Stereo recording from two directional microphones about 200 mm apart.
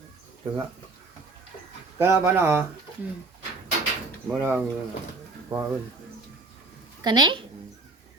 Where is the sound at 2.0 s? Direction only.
10° right (ahead or behind).